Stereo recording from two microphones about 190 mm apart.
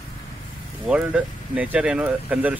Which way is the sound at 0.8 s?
5° right (ahead or behind).